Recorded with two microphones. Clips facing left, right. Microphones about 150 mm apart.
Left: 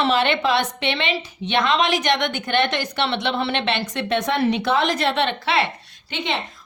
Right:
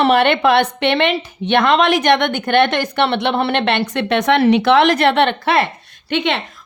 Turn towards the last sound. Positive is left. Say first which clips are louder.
# right 7 dB
turn(degrees=-75)  # may be behind; listen again after turning